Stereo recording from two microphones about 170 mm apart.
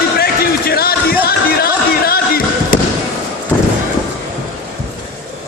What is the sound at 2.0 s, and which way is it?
Basketball bounce, 60° left (ahead or behind).